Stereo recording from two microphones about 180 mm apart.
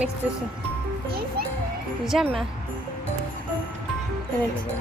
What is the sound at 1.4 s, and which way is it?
Music, 60° right (ahead or behind).